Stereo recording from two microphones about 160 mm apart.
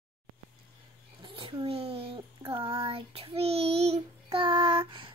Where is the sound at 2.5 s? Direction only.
35° right (ahead or behind).